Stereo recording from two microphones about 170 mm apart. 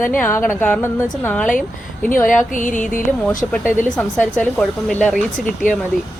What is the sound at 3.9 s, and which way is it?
Speech, 5° left (ahead or behind).